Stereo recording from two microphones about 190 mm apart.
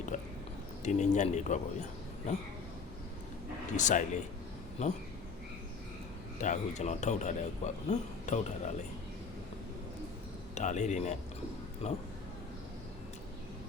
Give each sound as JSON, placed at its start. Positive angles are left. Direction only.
{"t": 0.1, "sound": "a man's voice", "side_deg": 40}
{"t": 3.8, "sound": "a man's voice", "side_deg": 40}
{"t": 6.4, "sound": "a man's voice", "side_deg": 40}
{"t": 10.5, "sound": "a man's voice", "side_deg": 40}